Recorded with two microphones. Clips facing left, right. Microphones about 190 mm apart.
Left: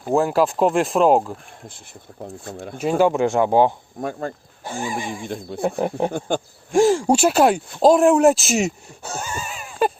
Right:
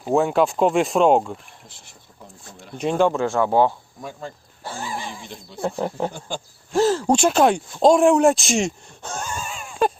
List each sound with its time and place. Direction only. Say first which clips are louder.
0.0 s speech: even; centre (ahead or behind)
2.2 s speech: left 11 dB; 55° left (ahead or behind)
3.0 s speech: left 2 dB; 15° left (ahead or behind)
4.0 s speech: left 7 dB; 55° left (ahead or behind)
4.6 s speech: left 4 dB; 15° left (ahead or behind)
5.2 s speech: left 4 dB; 55° left (ahead or behind)
6.7 s speech: left 3 dB; 10° left (ahead or behind)